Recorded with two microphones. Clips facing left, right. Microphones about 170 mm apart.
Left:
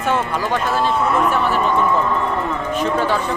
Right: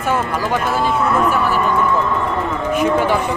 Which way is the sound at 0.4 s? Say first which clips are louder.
Right 1 dB; 10° right (ahead or behind).